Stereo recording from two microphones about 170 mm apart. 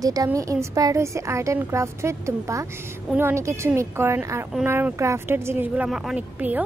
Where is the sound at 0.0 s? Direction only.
20° right (ahead or behind).